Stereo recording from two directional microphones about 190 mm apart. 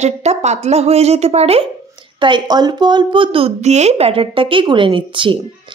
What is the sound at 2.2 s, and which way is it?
Speech, 25° right (ahead or behind).